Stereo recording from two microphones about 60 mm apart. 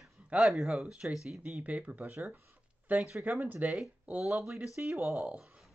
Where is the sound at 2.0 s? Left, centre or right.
Right.